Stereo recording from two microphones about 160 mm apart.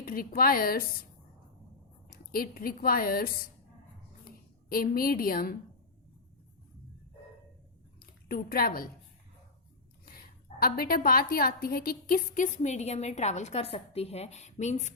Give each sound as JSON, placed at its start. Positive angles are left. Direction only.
{"t": 0.0, "sound": "a woman's voice", "side_deg": 60}
{"t": 2.0, "sound": "a woman's voice", "side_deg": 65}
{"t": 4.7, "sound": "a woman's voice", "side_deg": 65}
{"t": 7.9, "sound": "a sound", "side_deg": 70}
{"t": 10.6, "sound": "a woman's voice", "side_deg": 70}